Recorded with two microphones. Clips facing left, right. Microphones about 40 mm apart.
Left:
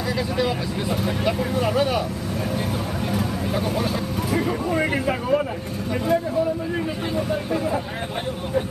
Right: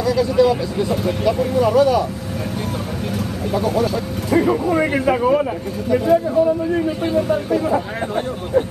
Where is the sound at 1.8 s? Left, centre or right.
Left.